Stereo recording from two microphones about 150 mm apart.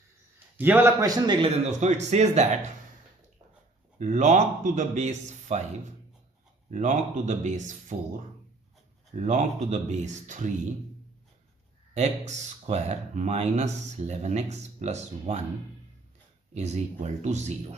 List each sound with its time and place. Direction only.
0.6 s a man's voice: 15° right (ahead or behind)
1.5 s speech: 50° right (ahead or behind)
3.9 s a man's voice: 55° right (ahead or behind)
6.7 s speech: 50° right (ahead or behind)
9.1 s speech: 50° right (ahead or behind)
11.9 s speech: 50° right (ahead or behind)
16.6 s speech: 50° right (ahead or behind)